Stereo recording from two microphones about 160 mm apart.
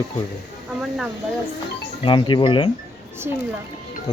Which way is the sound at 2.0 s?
30° left (ahead or behind).